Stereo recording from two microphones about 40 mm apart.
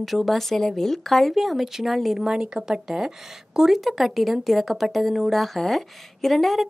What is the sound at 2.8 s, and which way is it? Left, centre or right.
A woman's voice, centre.